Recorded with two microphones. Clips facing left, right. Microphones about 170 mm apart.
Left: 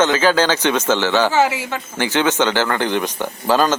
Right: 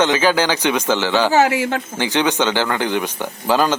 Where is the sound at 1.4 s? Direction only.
55° right (ahead or behind).